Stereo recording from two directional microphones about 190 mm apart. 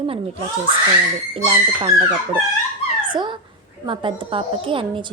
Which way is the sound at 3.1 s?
25° right (ahead or behind).